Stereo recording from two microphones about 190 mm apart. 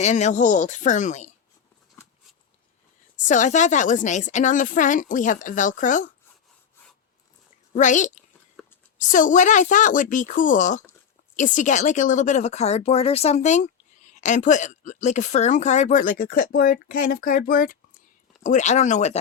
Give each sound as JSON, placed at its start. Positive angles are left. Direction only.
{"t": 0.0, "sound": "speech", "side_deg": 40}
{"t": 3.2, "sound": "speech", "side_deg": 40}
{"t": 7.8, "sound": "speech", "side_deg": 40}
{"t": 8.6, "sound": "a sound", "side_deg": 0}
{"t": 9.0, "sound": "speech", "side_deg": 45}
{"t": 18.4, "sound": "speech", "side_deg": 40}